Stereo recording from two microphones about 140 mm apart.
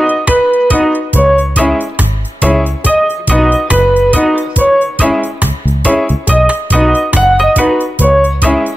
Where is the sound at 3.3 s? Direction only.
5° left (ahead or behind).